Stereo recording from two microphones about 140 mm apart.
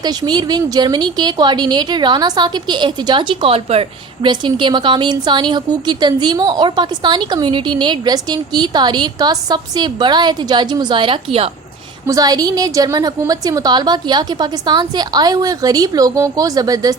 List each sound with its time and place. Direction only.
0.0 s speech: 30° right (ahead or behind)
12.0 s a woman's voice: 25° right (ahead or behind)